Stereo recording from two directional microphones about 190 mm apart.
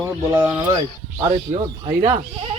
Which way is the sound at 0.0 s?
15° right (ahead or behind).